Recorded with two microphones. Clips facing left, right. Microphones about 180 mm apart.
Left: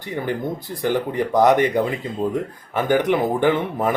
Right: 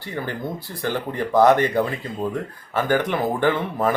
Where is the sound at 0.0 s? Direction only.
15° left (ahead or behind).